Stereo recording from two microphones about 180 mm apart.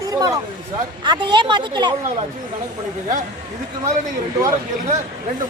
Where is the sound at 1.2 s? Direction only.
25° right (ahead or behind).